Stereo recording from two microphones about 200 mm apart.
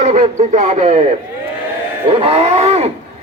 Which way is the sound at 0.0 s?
35° right (ahead or behind).